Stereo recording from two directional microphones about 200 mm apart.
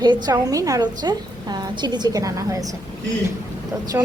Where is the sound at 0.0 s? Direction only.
20° right (ahead or behind).